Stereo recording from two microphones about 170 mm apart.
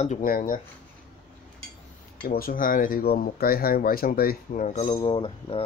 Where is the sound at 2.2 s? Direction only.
55° left (ahead or behind).